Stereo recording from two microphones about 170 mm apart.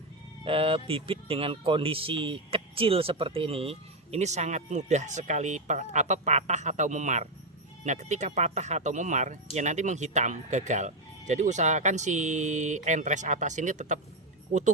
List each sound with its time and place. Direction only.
0.4 s speech: 35° right (ahead or behind)